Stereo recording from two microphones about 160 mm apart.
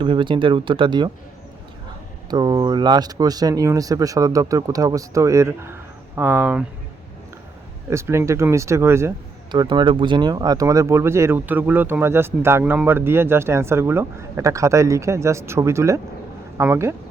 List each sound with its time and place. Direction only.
0.0 s speech: 30° right (ahead or behind)
2.3 s speech: 25° right (ahead or behind); by 6.7 s 10° right (ahead or behind)
7.9 s speech: 15° right (ahead or behind)
9.5 s speech: 30° right (ahead or behind)